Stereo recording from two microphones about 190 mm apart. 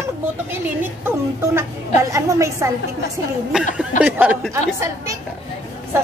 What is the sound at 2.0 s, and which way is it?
Speech, 15° right (ahead or behind).